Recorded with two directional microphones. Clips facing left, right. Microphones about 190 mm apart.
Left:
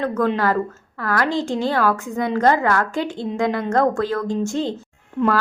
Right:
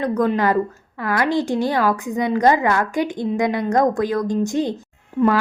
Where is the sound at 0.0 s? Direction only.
15° right (ahead or behind).